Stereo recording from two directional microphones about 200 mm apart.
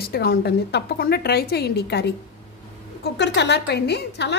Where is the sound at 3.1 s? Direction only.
60° left (ahead or behind).